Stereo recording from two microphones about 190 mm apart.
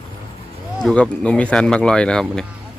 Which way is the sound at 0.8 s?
5° left (ahead or behind).